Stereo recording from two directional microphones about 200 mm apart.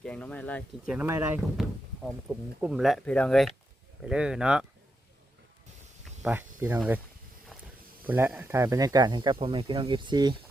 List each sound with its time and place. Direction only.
0.0 s speech: 5° left (ahead or behind)
0.9 s speech: 10° right (ahead or behind)
1.6 s speech: centre (ahead or behind)
6.2 s speech: 10° right (ahead or behind)
7.5 s a sound: centre (ahead or behind)
8.0 s speech: 10° right (ahead or behind)